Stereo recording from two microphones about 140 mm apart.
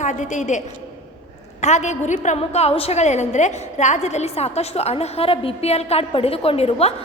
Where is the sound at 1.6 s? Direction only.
55° left (ahead or behind).